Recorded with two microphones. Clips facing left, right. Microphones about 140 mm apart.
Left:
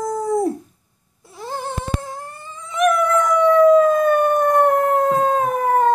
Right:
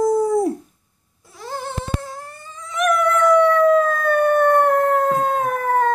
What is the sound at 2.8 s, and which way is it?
Howl, 20° left (ahead or behind).